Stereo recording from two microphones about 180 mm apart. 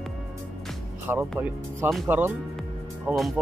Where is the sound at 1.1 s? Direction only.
15° right (ahead or behind).